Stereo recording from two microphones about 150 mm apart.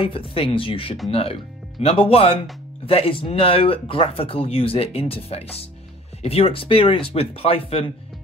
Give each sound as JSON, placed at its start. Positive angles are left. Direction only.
{"t": 0.0, "sound": "speech", "side_deg": 35}